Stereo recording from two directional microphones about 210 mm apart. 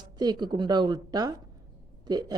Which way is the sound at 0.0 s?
20° right (ahead or behind).